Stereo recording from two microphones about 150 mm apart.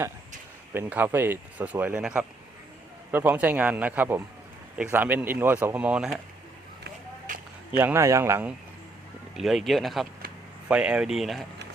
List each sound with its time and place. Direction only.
0.7 s speech: 15° right (ahead or behind)
7.8 s speech: 15° right (ahead or behind)
9.3 s speech: centre (ahead or behind)